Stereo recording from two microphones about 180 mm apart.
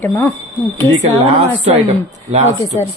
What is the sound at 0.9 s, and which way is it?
Speech, 35° right (ahead or behind).